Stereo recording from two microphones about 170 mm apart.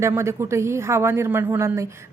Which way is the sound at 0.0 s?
15° right (ahead or behind).